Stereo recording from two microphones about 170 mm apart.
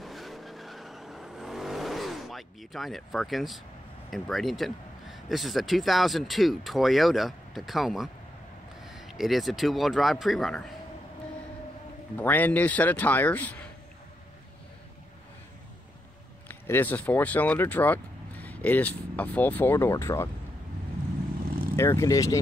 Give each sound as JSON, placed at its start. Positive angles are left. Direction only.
{"t": 0.0, "sound": "vehicle", "side_deg": 0}
{"t": 4.1, "sound": "speech", "side_deg": 0}
{"t": 12.2, "sound": "speech", "side_deg": 10}
{"t": 16.4, "sound": "speech", "side_deg": 10}
{"t": 21.7, "sound": "speech", "side_deg": 15}